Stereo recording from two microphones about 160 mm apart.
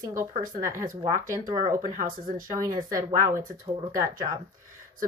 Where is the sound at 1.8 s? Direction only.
60° right (ahead or behind).